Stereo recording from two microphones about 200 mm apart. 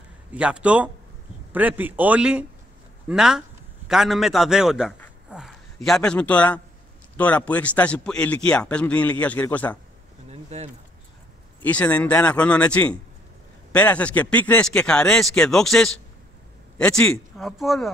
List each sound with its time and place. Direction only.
0.3 s a man's voice: 5° right (ahead or behind)
10.3 s a sound: 35° right (ahead or behind)
11.6 s a man's voice: 10° left (ahead or behind)